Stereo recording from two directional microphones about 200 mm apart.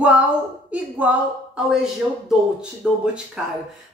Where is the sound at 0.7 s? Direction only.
5° right (ahead or behind).